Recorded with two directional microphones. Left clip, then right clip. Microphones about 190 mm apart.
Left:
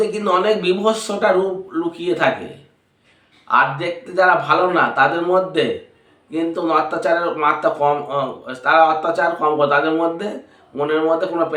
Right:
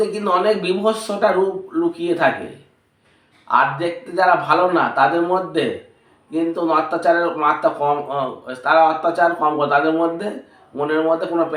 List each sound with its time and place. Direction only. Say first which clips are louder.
0.2 s speech: even; 20° left (ahead or behind)
3.5 s speech: even; 20° left (ahead or behind)